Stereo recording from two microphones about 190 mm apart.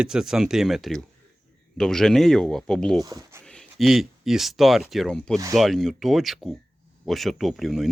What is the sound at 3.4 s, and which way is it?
Speech, centre (ahead or behind).